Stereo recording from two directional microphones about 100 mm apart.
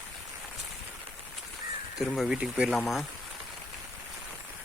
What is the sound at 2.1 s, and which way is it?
Speech, centre (ahead or behind).